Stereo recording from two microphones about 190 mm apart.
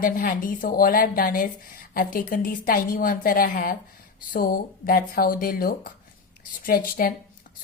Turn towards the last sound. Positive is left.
turn(degrees=50)  # may be behind; listen again after turning